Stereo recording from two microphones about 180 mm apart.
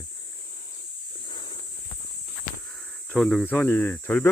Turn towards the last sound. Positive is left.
turn(degrees=10)  # may be behind; listen again after turning